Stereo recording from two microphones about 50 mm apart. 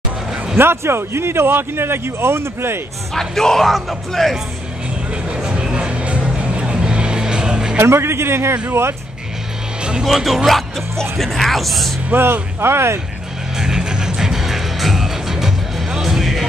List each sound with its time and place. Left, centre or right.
0.6 s speech: right
3.2 s speech: centre
5.3 s music: centre
7.7 s a man's voice: right
10.0 s speech: centre
12.1 s speech: right
13.6 s music: centre